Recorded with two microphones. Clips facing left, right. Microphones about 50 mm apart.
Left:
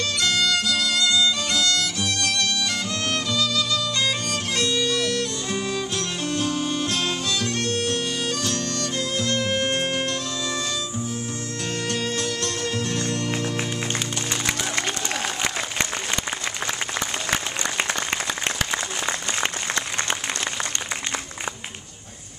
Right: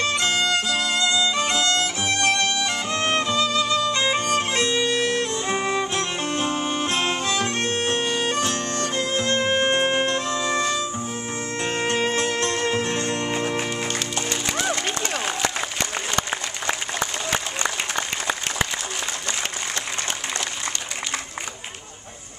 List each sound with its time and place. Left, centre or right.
0.0 s violin: right
11.6 s music: right
17.9 s applause: centre